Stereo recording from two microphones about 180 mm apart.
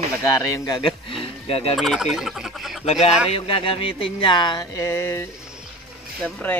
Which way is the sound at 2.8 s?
35° left (ahead or behind).